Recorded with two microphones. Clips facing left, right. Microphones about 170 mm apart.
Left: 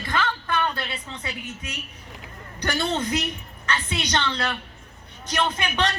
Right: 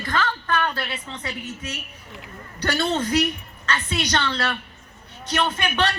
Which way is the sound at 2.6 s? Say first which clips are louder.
Right 2 dB; 10° left (ahead or behind).